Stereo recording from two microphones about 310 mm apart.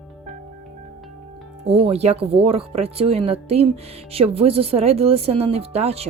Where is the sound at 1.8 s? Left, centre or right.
Centre.